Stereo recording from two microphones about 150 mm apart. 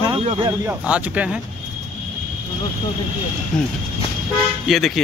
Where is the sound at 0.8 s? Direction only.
10° right (ahead or behind).